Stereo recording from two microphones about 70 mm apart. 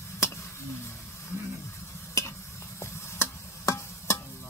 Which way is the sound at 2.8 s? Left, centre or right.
Left.